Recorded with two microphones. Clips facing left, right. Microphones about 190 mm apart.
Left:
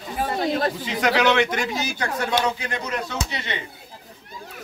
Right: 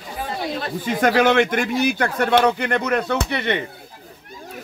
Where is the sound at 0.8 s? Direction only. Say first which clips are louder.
Right 6 dB; 50° right (ahead or behind).